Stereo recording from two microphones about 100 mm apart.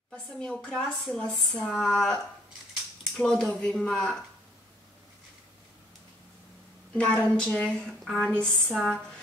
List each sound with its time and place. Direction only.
0.1 s a woman's voice: 10° left (ahead or behind)
7.0 s a woman's voice: 10° left (ahead or behind)